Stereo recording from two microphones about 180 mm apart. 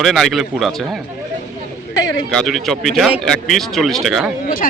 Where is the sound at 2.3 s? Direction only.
Centre (ahead or behind).